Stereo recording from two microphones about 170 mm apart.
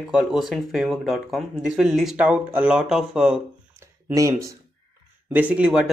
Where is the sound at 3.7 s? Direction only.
15° right (ahead or behind).